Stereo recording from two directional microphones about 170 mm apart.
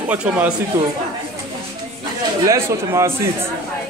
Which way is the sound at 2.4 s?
20° right (ahead or behind).